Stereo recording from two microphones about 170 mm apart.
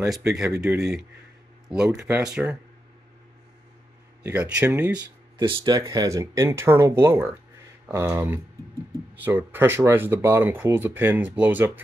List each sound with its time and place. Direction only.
0.0 s speech: 5° right (ahead or behind)
0.5 s speech: 15° right (ahead or behind)
2.0 s speech: 5° right (ahead or behind)
4.2 s speech: 10° right (ahead or behind)
4.9 s speech: 30° right (ahead or behind); by 11.8 s 10° right (ahead or behind)